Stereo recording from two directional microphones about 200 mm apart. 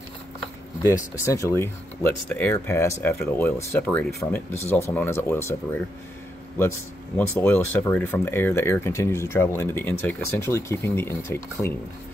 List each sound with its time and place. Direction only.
0.8 s speech: 15° left (ahead or behind)
7.2 s speech: 5° left (ahead or behind)